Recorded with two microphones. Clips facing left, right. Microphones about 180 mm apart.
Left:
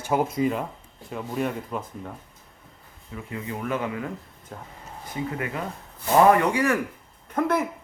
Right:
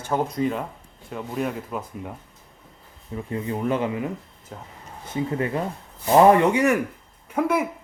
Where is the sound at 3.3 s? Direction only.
30° right (ahead or behind).